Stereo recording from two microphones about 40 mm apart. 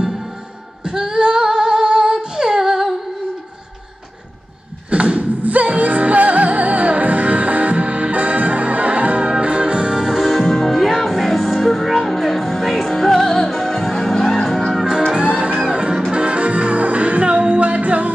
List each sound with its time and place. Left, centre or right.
0.8 s female singing: centre
4.8 s a sound: right
5.4 s music: right; by 14.4 s centre
14.7 s music: centre
15.1 s music: right